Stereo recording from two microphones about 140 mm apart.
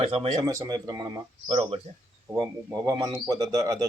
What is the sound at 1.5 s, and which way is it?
Speech, 45° right (ahead or behind).